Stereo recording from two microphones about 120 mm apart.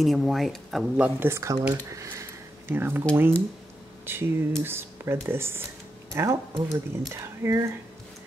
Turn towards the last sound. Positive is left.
turn(degrees=-25)  # may be behind; listen again after turning